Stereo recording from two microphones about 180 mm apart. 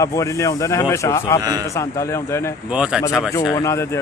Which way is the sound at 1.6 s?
15° left (ahead or behind).